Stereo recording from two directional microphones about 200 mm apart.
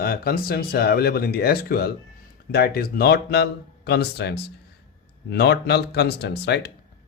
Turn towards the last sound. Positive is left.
turn(degrees=55)  # may be behind; listen again after turning